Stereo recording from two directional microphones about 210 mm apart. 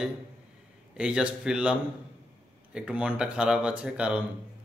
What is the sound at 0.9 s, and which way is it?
A man's voice, 5° right (ahead or behind).